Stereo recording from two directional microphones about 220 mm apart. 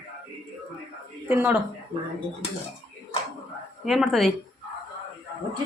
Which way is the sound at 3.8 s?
Centre (ahead or behind).